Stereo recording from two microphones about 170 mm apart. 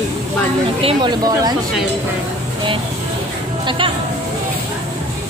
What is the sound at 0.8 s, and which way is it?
Speech, 25° right (ahead or behind).